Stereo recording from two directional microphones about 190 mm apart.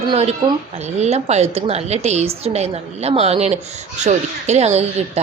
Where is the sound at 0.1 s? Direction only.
35° right (ahead or behind).